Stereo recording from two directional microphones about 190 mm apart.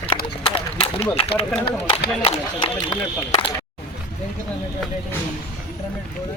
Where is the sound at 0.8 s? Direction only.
30° left (ahead or behind).